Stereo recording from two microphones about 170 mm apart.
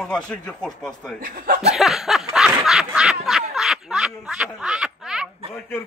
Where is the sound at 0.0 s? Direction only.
5° left (ahead or behind).